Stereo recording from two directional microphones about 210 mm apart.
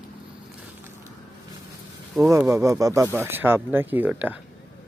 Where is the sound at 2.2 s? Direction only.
15° right (ahead or behind).